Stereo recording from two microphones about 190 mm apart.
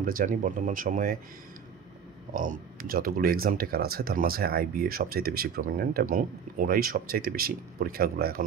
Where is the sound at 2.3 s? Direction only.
45° right (ahead or behind).